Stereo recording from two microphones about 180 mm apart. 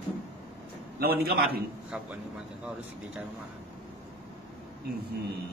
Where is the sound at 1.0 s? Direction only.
60° right (ahead or behind).